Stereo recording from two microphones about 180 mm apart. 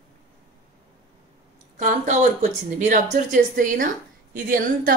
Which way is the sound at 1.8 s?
45° right (ahead or behind).